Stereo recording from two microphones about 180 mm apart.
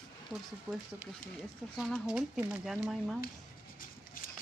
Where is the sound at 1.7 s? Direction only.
Centre (ahead or behind).